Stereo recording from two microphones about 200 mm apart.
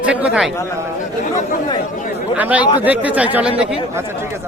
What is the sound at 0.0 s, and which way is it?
Speech, 5° right (ahead or behind).